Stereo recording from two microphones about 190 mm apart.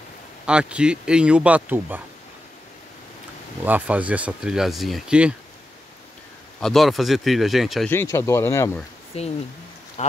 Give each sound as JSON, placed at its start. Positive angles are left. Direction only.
{"t": 0.5, "sound": "speech", "side_deg": -5}
{"t": 3.6, "sound": "speech", "side_deg": -10}
{"t": 6.6, "sound": "speech", "side_deg": 0}
{"t": 7.9, "sound": "speech", "side_deg": 15}
{"t": 9.1, "sound": "speech", "side_deg": 30}